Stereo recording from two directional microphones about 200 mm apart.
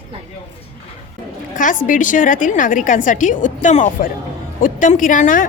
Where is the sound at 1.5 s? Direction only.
40° left (ahead or behind).